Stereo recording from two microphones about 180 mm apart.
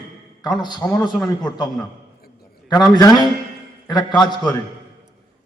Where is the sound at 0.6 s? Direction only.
25° left (ahead or behind).